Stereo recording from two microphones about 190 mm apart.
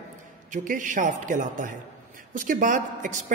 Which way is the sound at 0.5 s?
45° right (ahead or behind).